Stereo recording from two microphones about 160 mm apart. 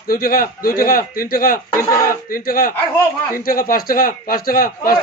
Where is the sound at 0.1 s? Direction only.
65° left (ahead or behind).